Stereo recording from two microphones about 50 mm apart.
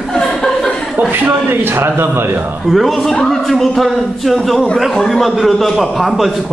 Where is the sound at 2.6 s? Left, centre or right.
Centre.